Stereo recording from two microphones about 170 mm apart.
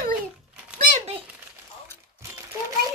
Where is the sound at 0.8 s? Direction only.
45° right (ahead or behind).